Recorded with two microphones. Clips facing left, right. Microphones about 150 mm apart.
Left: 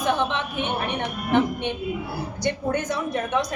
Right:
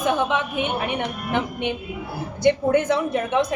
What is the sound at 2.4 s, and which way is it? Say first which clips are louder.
A woman's voice: right 8 dB; 25° right (ahead or behind).